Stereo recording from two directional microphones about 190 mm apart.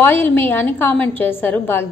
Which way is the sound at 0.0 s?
10° left (ahead or behind).